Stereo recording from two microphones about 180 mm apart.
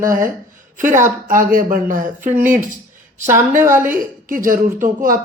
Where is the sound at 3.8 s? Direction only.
50° right (ahead or behind).